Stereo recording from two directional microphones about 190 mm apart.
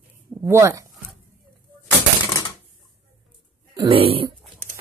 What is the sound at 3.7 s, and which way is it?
Speech, 30° right (ahead or behind).